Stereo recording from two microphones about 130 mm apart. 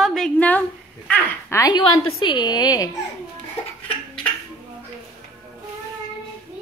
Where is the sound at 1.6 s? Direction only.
40° left (ahead or behind).